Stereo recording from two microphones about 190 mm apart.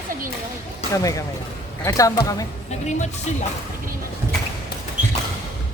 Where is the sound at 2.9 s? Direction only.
40° left (ahead or behind).